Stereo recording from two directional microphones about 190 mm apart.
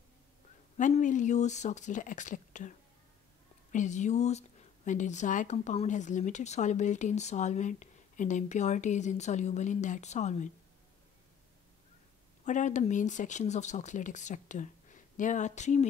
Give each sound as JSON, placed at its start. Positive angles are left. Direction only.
{"t": 0.7, "sound": "a woman's voice", "side_deg": 40}
{"t": 3.7, "sound": "a woman's voice", "side_deg": 40}
{"t": 12.4, "sound": "a woman's voice", "side_deg": 40}